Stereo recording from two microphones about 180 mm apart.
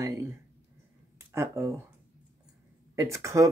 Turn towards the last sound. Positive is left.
turn(degrees=-15)  # may be behind; listen again after turning